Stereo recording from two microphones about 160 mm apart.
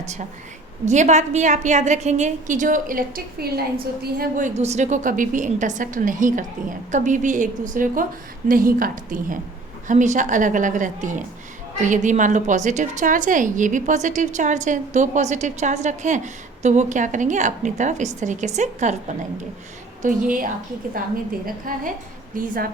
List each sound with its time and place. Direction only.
0.0 s a woman's voice: 45° right (ahead or behind)
4.0 s a woman's voice: 60° right (ahead or behind)